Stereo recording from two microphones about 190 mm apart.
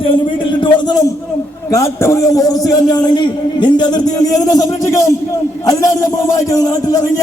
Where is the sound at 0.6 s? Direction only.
20° left (ahead or behind).